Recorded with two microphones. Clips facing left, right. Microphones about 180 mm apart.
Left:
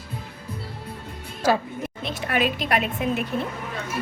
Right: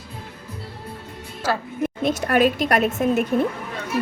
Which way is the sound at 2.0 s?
45° right (ahead or behind).